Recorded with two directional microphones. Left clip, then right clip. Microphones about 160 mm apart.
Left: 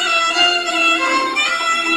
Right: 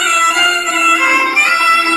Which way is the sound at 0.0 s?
20° left (ahead or behind).